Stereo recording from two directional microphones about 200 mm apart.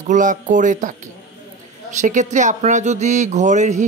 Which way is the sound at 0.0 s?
40° right (ahead or behind).